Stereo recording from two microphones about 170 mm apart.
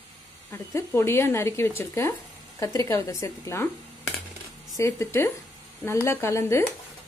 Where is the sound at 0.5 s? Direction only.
15° left (ahead or behind).